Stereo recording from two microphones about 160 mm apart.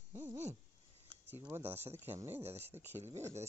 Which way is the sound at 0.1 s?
20° right (ahead or behind).